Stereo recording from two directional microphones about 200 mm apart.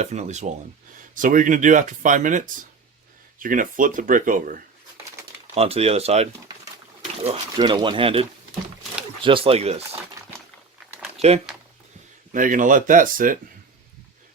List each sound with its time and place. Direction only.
0.0 s speech: 35° right (ahead or behind)
5.5 s speech: 30° right (ahead or behind)
7.3 s speech: 25° right (ahead or behind)
12.3 s speech: 40° right (ahead or behind)